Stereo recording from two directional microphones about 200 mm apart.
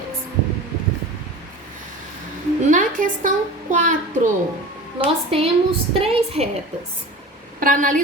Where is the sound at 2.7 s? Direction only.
40° right (ahead or behind).